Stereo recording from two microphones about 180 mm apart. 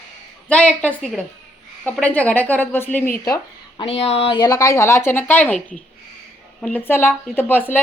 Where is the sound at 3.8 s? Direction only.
35° left (ahead or behind).